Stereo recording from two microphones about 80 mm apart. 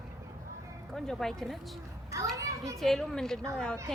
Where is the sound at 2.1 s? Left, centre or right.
Right.